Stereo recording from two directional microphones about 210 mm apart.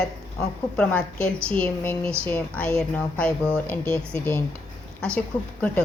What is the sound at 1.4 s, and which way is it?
A woman's voice, 5° left (ahead or behind).